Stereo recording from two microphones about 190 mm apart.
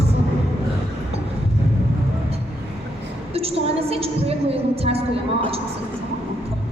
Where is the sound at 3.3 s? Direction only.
30° right (ahead or behind).